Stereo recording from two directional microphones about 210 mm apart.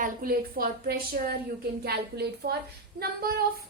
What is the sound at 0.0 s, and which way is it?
A woman's voice, 45° right (ahead or behind).